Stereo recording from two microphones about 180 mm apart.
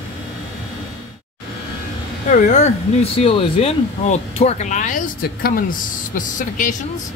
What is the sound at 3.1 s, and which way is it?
Speech, 35° left (ahead or behind).